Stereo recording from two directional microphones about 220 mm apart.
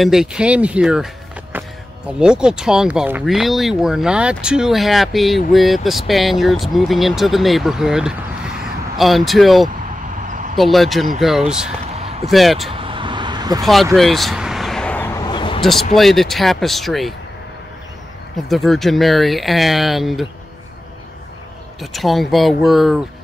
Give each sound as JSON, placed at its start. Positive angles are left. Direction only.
{"t": 0.0, "sound": "speech", "side_deg": 0}
{"t": 12.0, "sound": "a sound", "side_deg": -25}
{"t": 12.3, "sound": "speech", "side_deg": 0}
{"t": 12.7, "sound": "vehicle", "side_deg": -25}
{"t": 13.9, "sound": "a sound", "side_deg": 0}
{"t": 15.6, "sound": "speech", "side_deg": 0}
{"t": 18.5, "sound": "speech", "side_deg": 0}
{"t": 21.9, "sound": "speech", "side_deg": 0}